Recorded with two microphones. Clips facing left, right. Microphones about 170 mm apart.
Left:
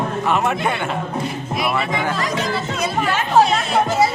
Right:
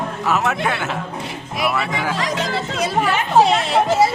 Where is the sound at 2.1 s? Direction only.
90° right.